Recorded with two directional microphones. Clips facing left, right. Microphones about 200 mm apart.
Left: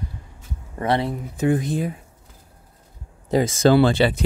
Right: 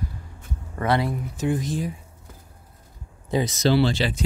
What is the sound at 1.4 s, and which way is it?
Speech, 55° left (ahead or behind).